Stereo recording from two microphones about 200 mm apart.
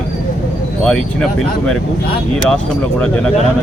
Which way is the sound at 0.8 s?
5° left (ahead or behind).